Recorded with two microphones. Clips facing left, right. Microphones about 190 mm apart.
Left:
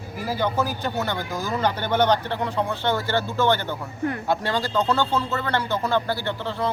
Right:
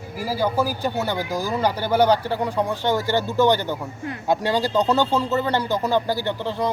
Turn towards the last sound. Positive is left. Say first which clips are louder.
# right 3 dB
turn(degrees=-15)  # may be behind; listen again after turning